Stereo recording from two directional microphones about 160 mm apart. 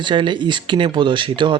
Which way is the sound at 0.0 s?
30° right (ahead or behind).